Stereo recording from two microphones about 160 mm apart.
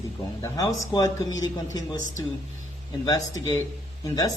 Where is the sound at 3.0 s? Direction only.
20° left (ahead or behind).